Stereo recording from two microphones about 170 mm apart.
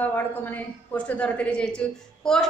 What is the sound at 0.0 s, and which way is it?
A woman's voice, 10° left (ahead or behind).